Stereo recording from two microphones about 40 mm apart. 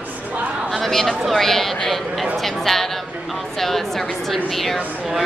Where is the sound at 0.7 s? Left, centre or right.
Centre.